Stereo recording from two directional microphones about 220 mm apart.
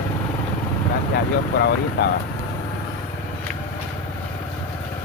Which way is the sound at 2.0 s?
45° left (ahead or behind).